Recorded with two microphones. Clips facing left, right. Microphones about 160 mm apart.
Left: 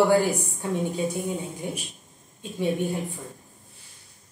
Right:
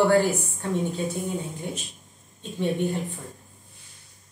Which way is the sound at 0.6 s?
10° left (ahead or behind).